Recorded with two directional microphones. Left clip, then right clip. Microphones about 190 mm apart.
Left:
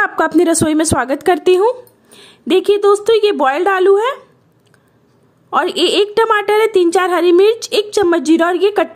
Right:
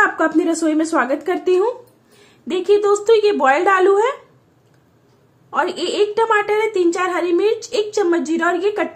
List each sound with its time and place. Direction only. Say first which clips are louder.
0.0 s a woman's voice: left 3 dB; 55° left (ahead or behind)
5.5 s a woman's voice: left 6 dB; 50° left (ahead or behind)